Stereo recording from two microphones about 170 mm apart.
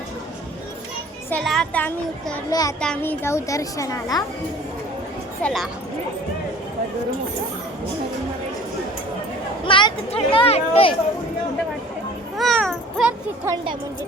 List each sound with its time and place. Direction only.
1.5 s speech: 5° left (ahead or behind)
2.5 s a child's voice: 20° left (ahead or behind)
2.8 s speech: 10° left (ahead or behind)
5.4 s speech: 5° left (ahead or behind)
9.6 s speech: 30° left (ahead or behind)
12.4 s a sound: centre (ahead or behind)